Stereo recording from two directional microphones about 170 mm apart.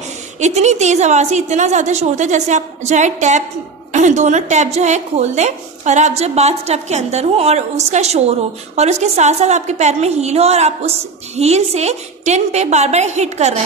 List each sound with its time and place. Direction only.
0.4 s a woman's voice: 40° right (ahead or behind)